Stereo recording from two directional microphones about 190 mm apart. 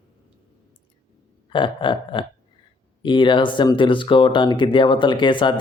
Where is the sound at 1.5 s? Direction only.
25° left (ahead or behind).